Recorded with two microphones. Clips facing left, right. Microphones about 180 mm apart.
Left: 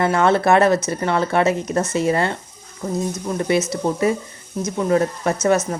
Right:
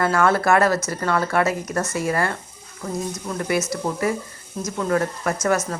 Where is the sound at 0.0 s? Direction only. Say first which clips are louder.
Left 2 dB; 20° left (ahead or behind).